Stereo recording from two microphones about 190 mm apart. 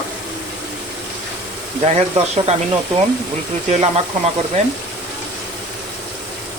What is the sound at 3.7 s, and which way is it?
Speech, 35° right (ahead or behind).